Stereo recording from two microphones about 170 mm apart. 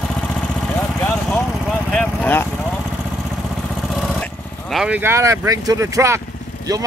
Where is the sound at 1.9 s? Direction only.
10° left (ahead or behind).